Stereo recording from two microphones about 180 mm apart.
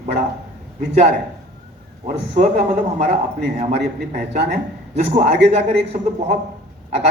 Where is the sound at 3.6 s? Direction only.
40° right (ahead or behind).